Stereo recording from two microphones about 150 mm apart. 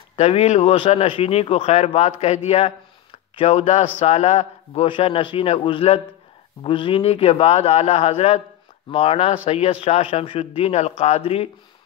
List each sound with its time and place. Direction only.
0.1 s speech: 40° left (ahead or behind)
4.8 s speech: 35° left (ahead or behind)